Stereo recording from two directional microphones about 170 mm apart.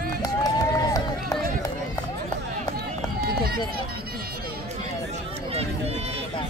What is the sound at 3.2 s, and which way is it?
Run, 65° right (ahead or behind).